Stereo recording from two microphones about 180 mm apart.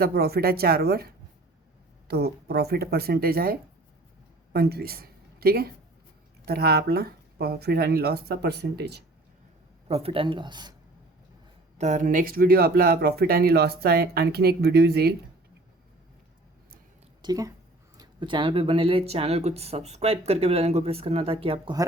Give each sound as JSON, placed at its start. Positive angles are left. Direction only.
{"t": 0.0, "sound": "speech", "side_deg": -60}
{"t": 9.9, "sound": "speech", "side_deg": -30}
{"t": 11.8, "sound": "speech", "side_deg": -45}
{"t": 17.2, "sound": "speech", "side_deg": -20}